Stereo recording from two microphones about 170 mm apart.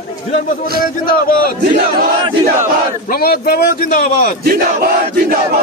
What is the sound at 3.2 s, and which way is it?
Speech, 65° left (ahead or behind).